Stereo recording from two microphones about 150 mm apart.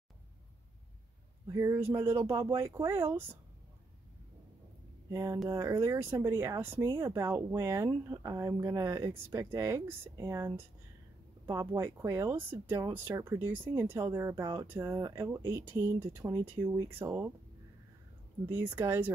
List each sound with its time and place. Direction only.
1.5 s speech: 20° right (ahead or behind)
5.1 s speech: 20° right (ahead or behind)
18.5 s speech: 15° right (ahead or behind)